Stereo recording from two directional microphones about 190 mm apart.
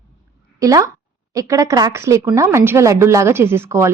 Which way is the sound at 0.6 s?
15° right (ahead or behind).